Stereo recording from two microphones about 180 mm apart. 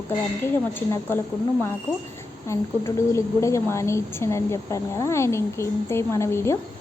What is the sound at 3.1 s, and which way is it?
A woman's voice, 15° left (ahead or behind).